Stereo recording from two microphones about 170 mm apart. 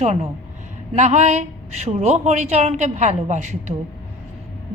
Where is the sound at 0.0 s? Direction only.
40° right (ahead or behind).